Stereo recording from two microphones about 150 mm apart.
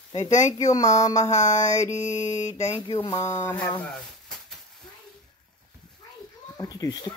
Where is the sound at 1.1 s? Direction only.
50° left (ahead or behind).